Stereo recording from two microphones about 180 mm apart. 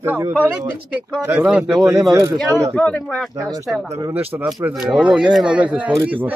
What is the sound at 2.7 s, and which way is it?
Speech, 5° left (ahead or behind).